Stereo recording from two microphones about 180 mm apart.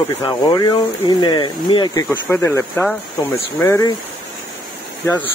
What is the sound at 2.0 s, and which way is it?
Speech, 10° left (ahead or behind).